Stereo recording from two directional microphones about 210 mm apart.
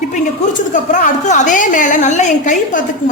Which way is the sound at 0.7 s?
35° left (ahead or behind).